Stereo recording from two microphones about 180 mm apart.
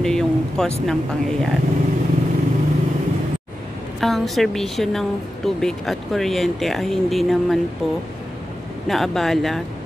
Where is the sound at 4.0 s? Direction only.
Centre (ahead or behind).